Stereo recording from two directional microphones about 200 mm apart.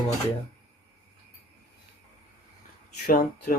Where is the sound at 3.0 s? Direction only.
45° left (ahead or behind).